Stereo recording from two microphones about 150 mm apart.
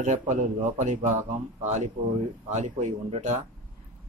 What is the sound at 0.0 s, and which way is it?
Speech, 50° right (ahead or behind).